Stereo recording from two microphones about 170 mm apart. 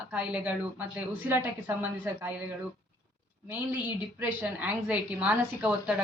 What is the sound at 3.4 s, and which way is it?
A woman's voice, 10° right (ahead or behind).